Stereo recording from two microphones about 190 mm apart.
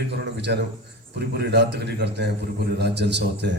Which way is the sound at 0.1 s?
60° right (ahead or behind).